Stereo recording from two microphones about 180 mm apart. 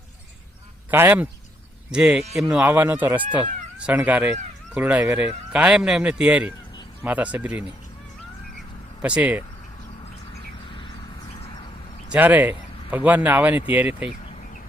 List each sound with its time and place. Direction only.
0.9 s a man's voice: 10° right (ahead or behind)
9.0 s speech: 5° right (ahead or behind)
12.0 s speech: 10° right (ahead or behind)